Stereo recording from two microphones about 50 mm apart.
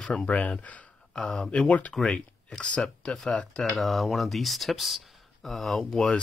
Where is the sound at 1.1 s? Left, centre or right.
Centre.